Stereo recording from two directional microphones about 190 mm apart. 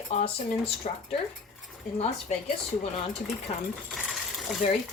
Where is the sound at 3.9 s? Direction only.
Centre (ahead or behind).